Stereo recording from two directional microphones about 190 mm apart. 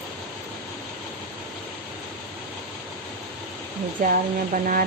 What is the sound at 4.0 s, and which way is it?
Speech, 45° right (ahead or behind).